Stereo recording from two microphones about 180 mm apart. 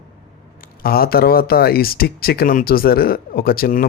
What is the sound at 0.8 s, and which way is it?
Speech, 55° left (ahead or behind).